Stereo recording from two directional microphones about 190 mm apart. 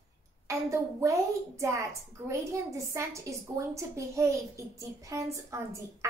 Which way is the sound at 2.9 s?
15° right (ahead or behind).